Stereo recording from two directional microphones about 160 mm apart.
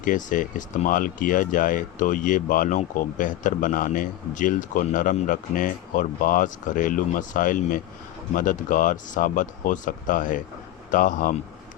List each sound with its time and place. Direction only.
0.0 s speech: 55° left (ahead or behind)